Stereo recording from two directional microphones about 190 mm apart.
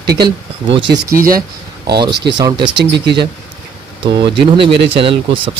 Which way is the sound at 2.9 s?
65° right (ahead or behind).